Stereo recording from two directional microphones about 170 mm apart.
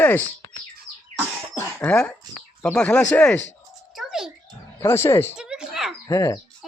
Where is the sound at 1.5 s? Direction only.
10° left (ahead or behind).